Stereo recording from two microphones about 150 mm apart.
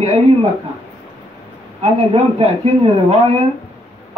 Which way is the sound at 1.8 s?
40° right (ahead or behind).